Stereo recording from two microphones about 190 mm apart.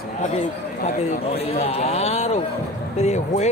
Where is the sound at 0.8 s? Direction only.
35° left (ahead or behind).